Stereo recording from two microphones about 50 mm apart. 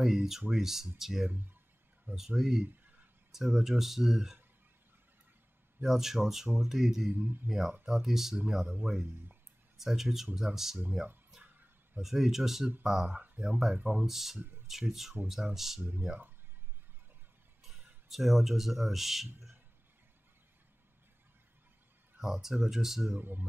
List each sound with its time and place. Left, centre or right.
0.0 s speech: centre
5.8 s speech: centre
7.1 s speech: right
7.4 s speech: centre
8.8 s speech: right
9.8 s speech: centre
11.4 s a sound: right
12.0 s speech: centre
13.1 s speech: right
14.0 s speech: centre
15.8 s speech: right
17.6 s speech: centre
22.2 s speech: centre
23.0 s speech: right